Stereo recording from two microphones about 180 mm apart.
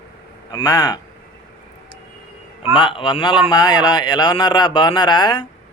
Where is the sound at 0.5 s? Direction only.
20° left (ahead or behind).